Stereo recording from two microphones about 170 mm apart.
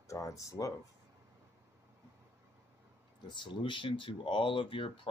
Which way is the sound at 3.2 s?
30° left (ahead or behind).